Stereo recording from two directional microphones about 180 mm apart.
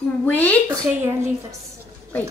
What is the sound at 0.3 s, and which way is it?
Speech, 10° left (ahead or behind).